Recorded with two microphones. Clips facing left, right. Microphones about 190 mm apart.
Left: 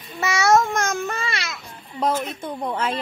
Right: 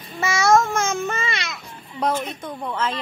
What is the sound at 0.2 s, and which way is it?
Babbling, centre (ahead or behind).